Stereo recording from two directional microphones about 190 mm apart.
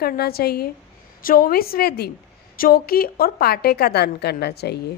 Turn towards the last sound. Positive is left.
turn(degrees=60)  # may be behind; listen again after turning